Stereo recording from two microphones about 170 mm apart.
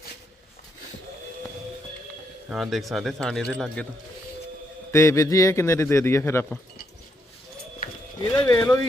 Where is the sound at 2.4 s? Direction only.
Centre (ahead or behind).